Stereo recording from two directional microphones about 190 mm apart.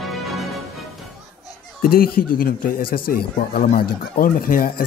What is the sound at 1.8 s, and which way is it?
Speech, 50° left (ahead or behind).